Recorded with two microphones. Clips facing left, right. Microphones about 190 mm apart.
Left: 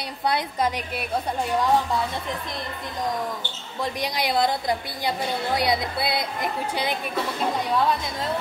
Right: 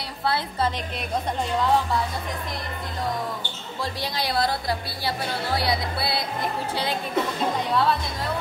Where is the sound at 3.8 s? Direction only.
20° left (ahead or behind).